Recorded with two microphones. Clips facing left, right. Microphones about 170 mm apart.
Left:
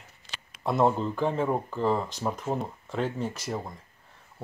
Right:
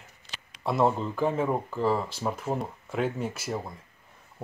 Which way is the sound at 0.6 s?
Centre (ahead or behind).